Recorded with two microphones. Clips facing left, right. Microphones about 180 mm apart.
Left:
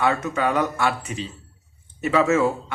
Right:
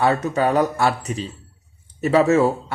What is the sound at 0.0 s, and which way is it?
Speech, 35° right (ahead or behind).